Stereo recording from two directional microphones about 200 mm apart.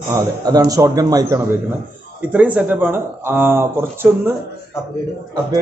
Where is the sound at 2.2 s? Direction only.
5° right (ahead or behind).